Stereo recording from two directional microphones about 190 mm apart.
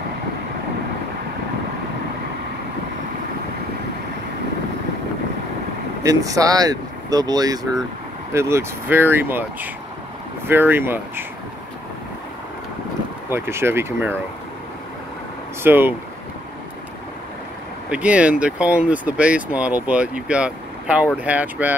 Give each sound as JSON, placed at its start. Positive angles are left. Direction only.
{"t": 6.0, "sound": "speech", "side_deg": -15}
{"t": 13.3, "sound": "speech", "side_deg": -15}
{"t": 15.6, "sound": "speech", "side_deg": -10}
{"t": 17.8, "sound": "speech", "side_deg": -5}